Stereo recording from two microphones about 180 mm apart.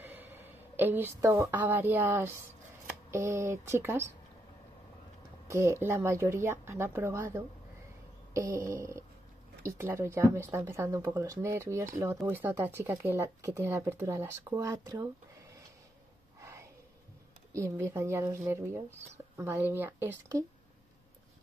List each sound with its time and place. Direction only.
0.0 s a woman's voice: 10° right (ahead or behind)
5.5 s speech: 15° right (ahead or behind)
16.3 s a sound: 15° right (ahead or behind)
17.5 s speech: 15° right (ahead or behind)